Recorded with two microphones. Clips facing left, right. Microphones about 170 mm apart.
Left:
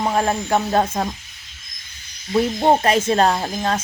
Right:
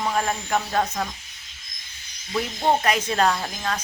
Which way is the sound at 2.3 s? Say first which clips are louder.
Left 6 dB; 35° left (ahead or behind).